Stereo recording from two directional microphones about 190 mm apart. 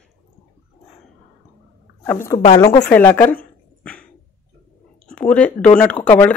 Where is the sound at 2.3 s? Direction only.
20° left (ahead or behind).